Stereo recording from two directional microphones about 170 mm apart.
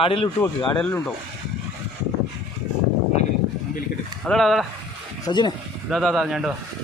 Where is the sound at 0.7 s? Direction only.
5° left (ahead or behind).